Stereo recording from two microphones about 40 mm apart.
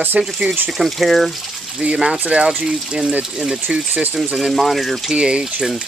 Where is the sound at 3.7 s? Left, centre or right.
Right.